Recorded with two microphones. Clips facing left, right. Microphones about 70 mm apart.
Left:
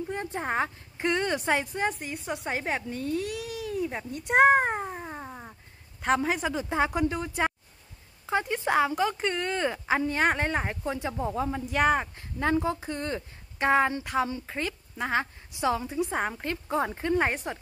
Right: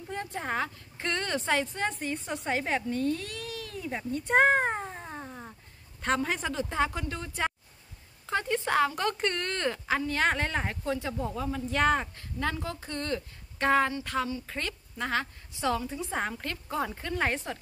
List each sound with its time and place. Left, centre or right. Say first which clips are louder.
0.1 s speech: even; left
9.8 s a woman's voice: left 2 dB; centre
11.7 s a woman's voice: left 1 dB; centre